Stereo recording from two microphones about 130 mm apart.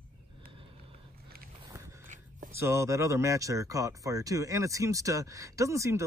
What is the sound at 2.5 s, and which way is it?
Speech, 20° right (ahead or behind).